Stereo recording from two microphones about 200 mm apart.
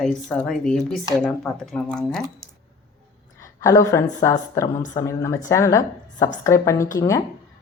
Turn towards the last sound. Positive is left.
turn(degrees=15)  # may be behind; listen again after turning